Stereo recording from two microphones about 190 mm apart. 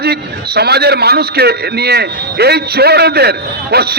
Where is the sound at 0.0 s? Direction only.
55° right (ahead or behind).